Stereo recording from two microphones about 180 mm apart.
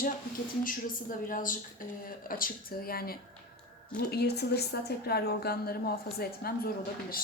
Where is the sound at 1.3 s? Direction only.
50° left (ahead or behind).